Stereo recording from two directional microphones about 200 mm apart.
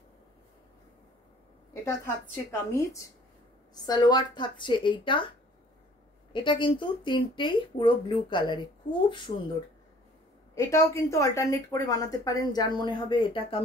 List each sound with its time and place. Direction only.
1.9 s a woman's voice: 15° left (ahead or behind)
6.3 s speech: 25° left (ahead or behind)
10.5 s a woman's voice: 15° left (ahead or behind)